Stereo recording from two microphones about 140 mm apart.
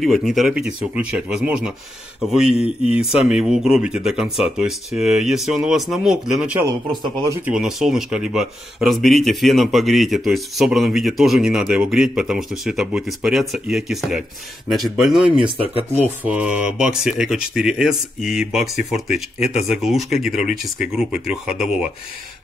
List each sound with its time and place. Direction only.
0.0 s speech: centre (ahead or behind)
6.6 s a man's voice: 30° right (ahead or behind)
7.4 s speech: 5° right (ahead or behind)
15.4 s speech: 45° right (ahead or behind)
16.0 s speech: 10° right (ahead or behind)
19.7 s speech: centre (ahead or behind)